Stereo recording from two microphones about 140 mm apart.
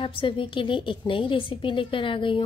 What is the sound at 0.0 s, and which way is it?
A woman's voice, 40° left (ahead or behind).